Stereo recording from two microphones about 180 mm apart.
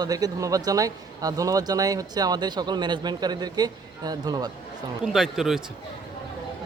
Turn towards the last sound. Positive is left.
turn(degrees=0)  # may be behind; listen again after turning